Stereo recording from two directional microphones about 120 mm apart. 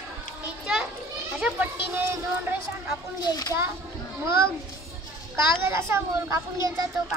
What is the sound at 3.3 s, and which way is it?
Speech, 30° left (ahead or behind).